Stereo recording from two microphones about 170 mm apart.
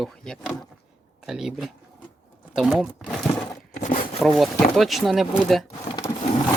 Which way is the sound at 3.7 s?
45° left (ahead or behind).